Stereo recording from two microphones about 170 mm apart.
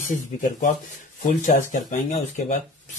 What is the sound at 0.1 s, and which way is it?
Speech, 50° left (ahead or behind).